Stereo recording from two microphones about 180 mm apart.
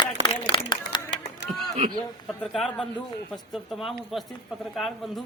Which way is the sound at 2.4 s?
Centre (ahead or behind).